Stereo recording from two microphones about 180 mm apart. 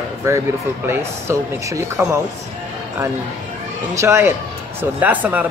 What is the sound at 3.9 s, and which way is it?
Speech, 15° right (ahead or behind).